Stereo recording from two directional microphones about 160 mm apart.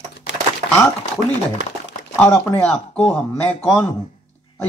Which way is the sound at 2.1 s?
10° left (ahead or behind).